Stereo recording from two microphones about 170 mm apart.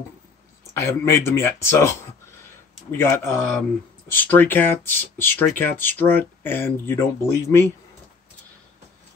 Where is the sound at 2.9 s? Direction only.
15° left (ahead or behind).